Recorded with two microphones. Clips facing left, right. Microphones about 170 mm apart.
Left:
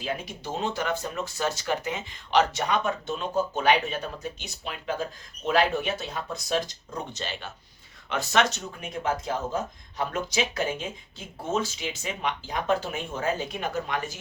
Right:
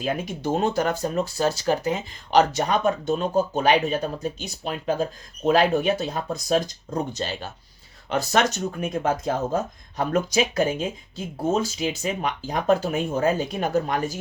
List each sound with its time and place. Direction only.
0.0 s speech: 50° right (ahead or behind)